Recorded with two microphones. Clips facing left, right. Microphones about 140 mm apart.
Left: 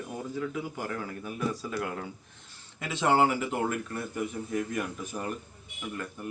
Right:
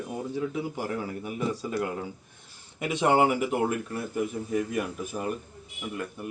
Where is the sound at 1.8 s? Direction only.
5° right (ahead or behind).